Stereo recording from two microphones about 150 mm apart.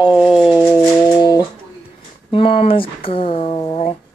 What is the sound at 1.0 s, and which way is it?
Music, 25° left (ahead or behind).